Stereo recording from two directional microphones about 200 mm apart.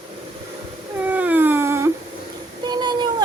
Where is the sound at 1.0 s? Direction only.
10° right (ahead or behind).